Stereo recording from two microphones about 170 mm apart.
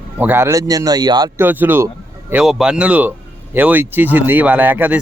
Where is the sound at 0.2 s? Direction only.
15° right (ahead or behind).